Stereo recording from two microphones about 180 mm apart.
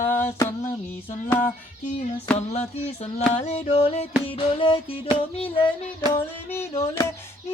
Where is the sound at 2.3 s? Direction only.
35° left (ahead or behind).